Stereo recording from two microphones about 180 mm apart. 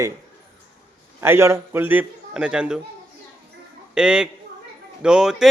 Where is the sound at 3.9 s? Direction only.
5° right (ahead or behind).